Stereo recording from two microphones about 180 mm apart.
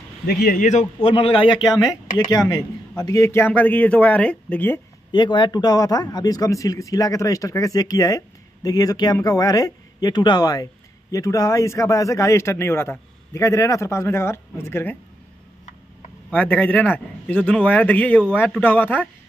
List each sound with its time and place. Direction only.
0.3 s speech: 55° left (ahead or behind)
1.0 s speech: 30° left (ahead or behind); by 4.7 s 10° left (ahead or behind)
5.1 s speech: 25° left (ahead or behind)
16.3 s speech: 10° left (ahead or behind)